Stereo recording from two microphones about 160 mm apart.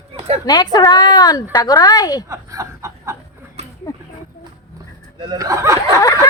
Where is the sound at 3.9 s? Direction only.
20° left (ahead or behind).